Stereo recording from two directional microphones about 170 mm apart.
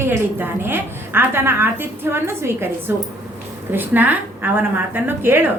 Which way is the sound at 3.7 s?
10° right (ahead or behind).